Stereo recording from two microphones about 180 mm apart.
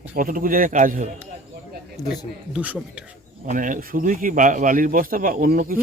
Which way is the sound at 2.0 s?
20° left (ahead or behind).